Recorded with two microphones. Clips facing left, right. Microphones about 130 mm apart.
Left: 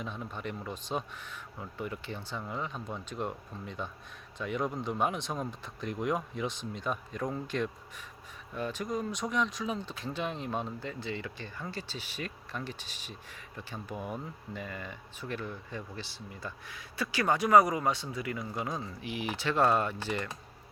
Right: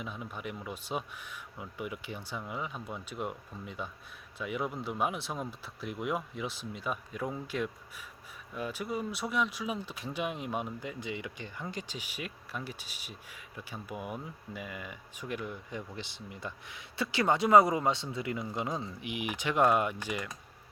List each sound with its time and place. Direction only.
0.0 s speech: 5° right (ahead or behind)